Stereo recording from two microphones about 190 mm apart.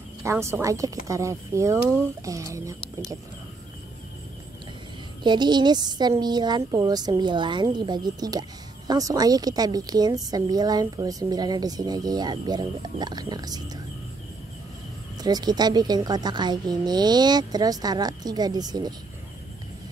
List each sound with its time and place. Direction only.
0.2 s a woman's voice: 15° right (ahead or behind)
5.2 s speech: 25° right (ahead or behind)
15.2 s speech: 20° right (ahead or behind)